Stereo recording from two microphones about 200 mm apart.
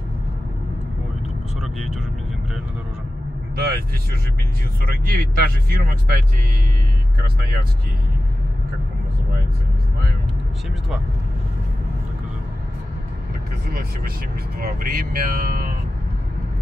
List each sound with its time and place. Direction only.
1.6 s speech: centre (ahead or behind)
3.5 s speech: 50° right (ahead or behind)
5.0 s speech: 50° right (ahead or behind)
13.7 s speech: 50° right (ahead or behind)